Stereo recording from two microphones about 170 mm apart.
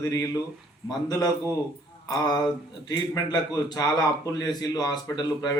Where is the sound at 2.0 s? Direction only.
25° left (ahead or behind).